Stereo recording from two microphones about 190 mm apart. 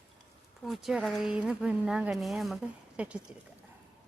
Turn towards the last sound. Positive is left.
turn(degrees=-5)  # may be behind; listen again after turning